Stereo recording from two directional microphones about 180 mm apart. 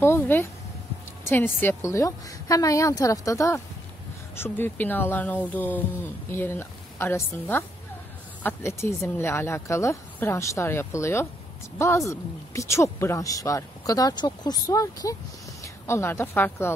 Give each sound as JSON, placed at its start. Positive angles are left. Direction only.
{"t": 0.0, "sound": "a woman's voice", "side_deg": 15}